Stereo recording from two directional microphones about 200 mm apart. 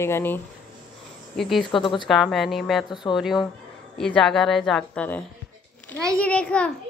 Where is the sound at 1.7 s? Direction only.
25° left (ahead or behind).